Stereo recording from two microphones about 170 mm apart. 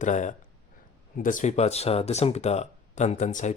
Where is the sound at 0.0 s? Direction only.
45° left (ahead or behind).